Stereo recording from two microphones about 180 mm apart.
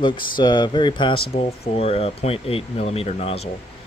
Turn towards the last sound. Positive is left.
turn(degrees=35)  # may be behind; listen again after turning